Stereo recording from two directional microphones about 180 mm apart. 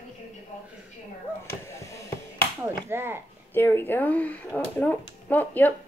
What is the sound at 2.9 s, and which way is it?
Speech, 15° right (ahead or behind).